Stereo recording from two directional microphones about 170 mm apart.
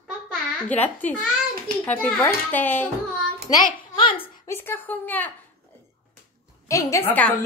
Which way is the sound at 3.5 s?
25° left (ahead or behind).